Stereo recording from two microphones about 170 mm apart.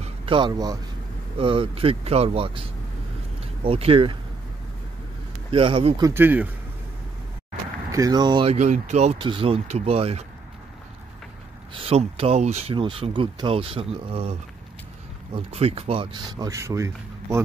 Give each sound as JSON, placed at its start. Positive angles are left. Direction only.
{"t": 0.0, "sound": "speech", "side_deg": -30}
{"t": 3.6, "sound": "speech", "side_deg": -35}
{"t": 5.5, "sound": "speech", "side_deg": -30}
{"t": 6.0, "sound": "speech", "side_deg": -10}
{"t": 7.9, "sound": "speech", "side_deg": -20}
{"t": 8.5, "sound": "speech", "side_deg": -45}
{"t": 11.7, "sound": "speech", "side_deg": -35}
{"t": 15.3, "sound": "speech", "side_deg": -35}